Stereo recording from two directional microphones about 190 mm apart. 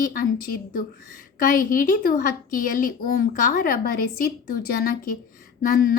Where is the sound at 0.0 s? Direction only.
45° left (ahead or behind).